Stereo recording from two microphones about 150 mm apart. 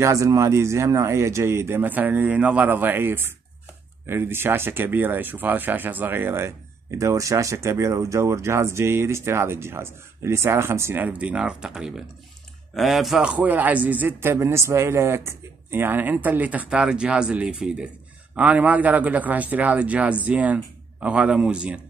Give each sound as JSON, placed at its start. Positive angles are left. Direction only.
{"t": 0.0, "sound": "speech", "side_deg": -20}